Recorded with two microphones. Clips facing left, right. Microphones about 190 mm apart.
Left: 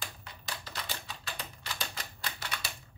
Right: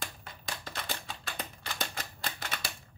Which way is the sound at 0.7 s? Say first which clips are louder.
Right 4 dB; 50° right (ahead or behind).